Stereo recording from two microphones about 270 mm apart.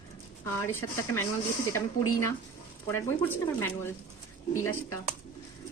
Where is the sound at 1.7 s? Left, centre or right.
Centre.